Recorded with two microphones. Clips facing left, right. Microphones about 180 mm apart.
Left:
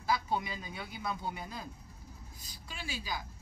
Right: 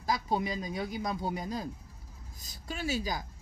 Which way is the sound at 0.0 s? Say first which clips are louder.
Right 2 dB; 35° right (ahead or behind).